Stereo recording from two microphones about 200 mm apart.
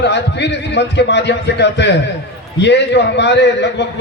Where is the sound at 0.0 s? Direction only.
60° left (ahead or behind).